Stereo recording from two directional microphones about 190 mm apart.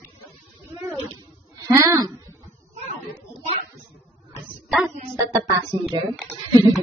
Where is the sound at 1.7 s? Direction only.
15° right (ahead or behind).